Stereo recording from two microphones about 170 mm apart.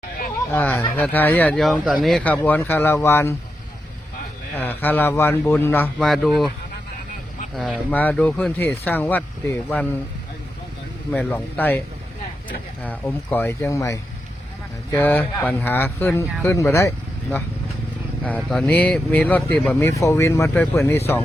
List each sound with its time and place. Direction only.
0.5 s speech: 10° left (ahead or behind)
4.5 s speech: 10° left (ahead or behind)
7.5 s speech: centre (ahead or behind)
11.1 s speech: 5° left (ahead or behind)
12.8 s speech: 10° left (ahead or behind)
18.2 s speech: 5° left (ahead or behind)